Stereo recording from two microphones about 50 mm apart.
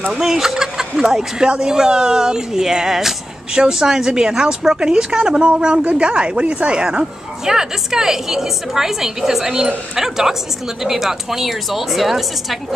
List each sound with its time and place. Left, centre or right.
0.2 s a woman's voice: centre